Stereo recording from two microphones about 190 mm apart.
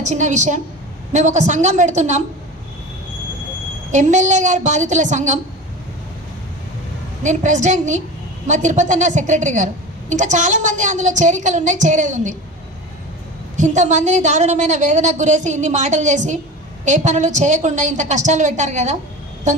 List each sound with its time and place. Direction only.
0.0 s a woman's voice: 40° right (ahead or behind)
3.9 s a woman's voice: 40° right (ahead or behind)
7.2 s a woman's voice: 40° right (ahead or behind)
13.6 s a woman's voice: 40° right (ahead or behind)